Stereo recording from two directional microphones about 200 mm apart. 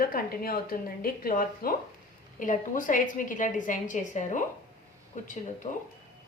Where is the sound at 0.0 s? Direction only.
45° left (ahead or behind).